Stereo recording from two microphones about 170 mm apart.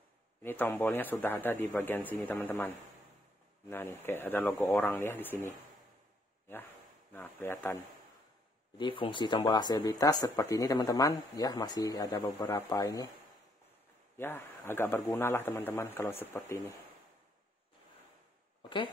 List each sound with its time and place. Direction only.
0.4 s a man's voice: 10° left (ahead or behind)
7.1 s a man's voice: 10° left (ahead or behind)
8.7 s speech: 30° left (ahead or behind)
14.1 s a man's voice: 15° left (ahead or behind)
18.6 s a sound: 30° left (ahead or behind)